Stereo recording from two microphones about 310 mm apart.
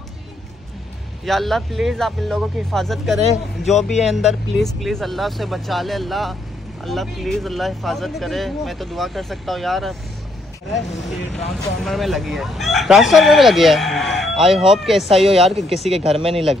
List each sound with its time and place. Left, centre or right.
1.2 s crowing: centre
11.3 s crowing: centre